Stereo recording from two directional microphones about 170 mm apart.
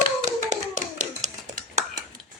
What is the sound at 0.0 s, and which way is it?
Hands, 45° right (ahead or behind).